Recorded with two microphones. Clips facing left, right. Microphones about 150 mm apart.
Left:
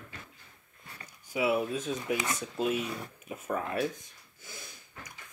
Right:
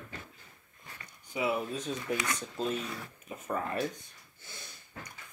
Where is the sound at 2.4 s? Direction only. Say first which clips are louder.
Left 3 dB; 10° left (ahead or behind).